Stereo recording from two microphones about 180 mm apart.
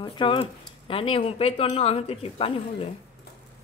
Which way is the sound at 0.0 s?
30° left (ahead or behind).